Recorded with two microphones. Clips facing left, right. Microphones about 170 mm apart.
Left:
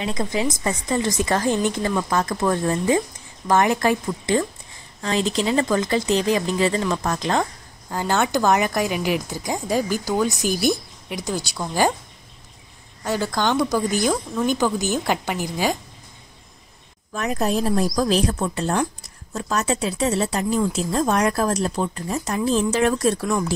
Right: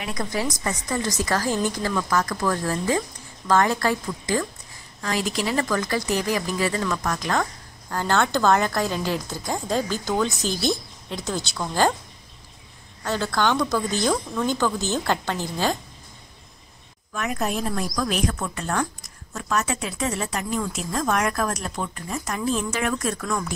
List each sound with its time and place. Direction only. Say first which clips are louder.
0.0 s speech: left 4 dB; 25° left (ahead or behind)
7.9 s speech: left 1 dB; 15° left (ahead or behind)
13.0 s speech: left 1 dB; 15° left (ahead or behind)
17.1 s a woman's voice: left 4 dB; 35° left (ahead or behind)